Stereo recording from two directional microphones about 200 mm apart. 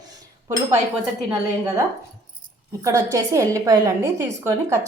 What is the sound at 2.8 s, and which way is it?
A woman's voice, 15° right (ahead or behind).